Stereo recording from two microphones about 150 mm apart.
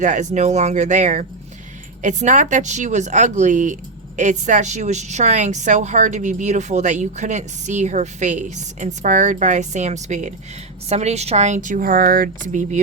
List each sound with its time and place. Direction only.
0.0 s a woman's voice: 55° right (ahead or behind)